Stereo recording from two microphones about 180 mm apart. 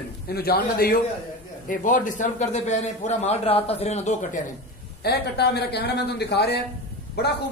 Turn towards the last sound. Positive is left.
turn(degrees=65)  # may be behind; listen again after turning